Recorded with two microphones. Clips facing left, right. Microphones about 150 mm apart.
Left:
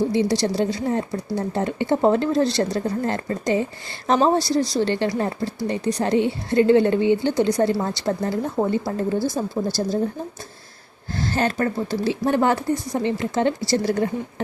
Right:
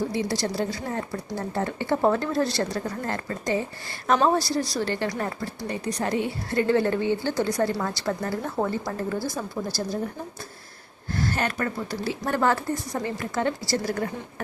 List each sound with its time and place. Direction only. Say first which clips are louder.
0.1 s speech: left 6 dB; 20° left (ahead or behind)
11.1 s speech: left 4 dB; 30° left (ahead or behind)